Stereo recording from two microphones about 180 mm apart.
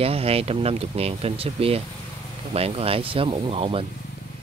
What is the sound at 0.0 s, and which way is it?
Speech, 35° right (ahead or behind).